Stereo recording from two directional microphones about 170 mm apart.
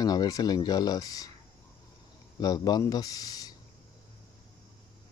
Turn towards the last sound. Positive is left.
turn(degrees=20)  # may be behind; listen again after turning